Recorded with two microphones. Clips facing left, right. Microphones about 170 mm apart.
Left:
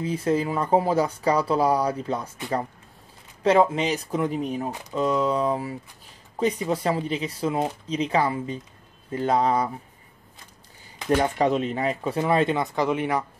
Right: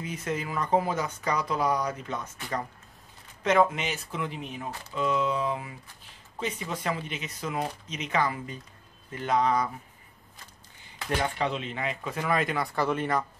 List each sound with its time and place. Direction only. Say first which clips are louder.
0.0 s speech: left 9 dB; 30° left (ahead or behind)
3.4 s speech: left 5 dB; 30° left (ahead or behind)
11.1 s speech: left 7 dB; 40° left (ahead or behind); by 13.2 s 15° left (ahead or behind)